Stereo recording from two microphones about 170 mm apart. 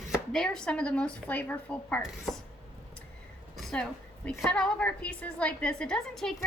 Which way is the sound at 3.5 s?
Centre (ahead or behind).